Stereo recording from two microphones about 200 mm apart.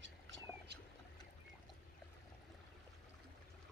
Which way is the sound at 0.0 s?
65° right (ahead or behind).